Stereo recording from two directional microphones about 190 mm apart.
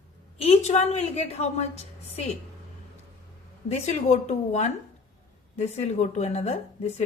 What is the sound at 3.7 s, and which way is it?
A woman's voice, 40° left (ahead or behind).